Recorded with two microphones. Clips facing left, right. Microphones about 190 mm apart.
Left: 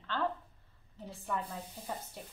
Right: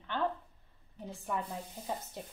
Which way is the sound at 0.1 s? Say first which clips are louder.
Right 1 dB; 15° right (ahead or behind).